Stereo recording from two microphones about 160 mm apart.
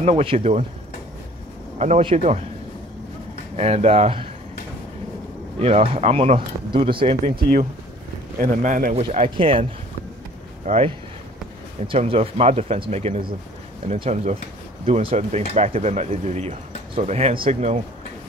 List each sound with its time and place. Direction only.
0.0 s speech: 35° right (ahead or behind)
1.8 s speech: 40° right (ahead or behind)
3.5 s speech: 40° right (ahead or behind)
5.6 s speech: 40° right (ahead or behind)
8.4 s a man's voice: 55° right (ahead or behind)
8.9 s speech: 40° right (ahead or behind)
11.9 s speech: 35° right (ahead or behind)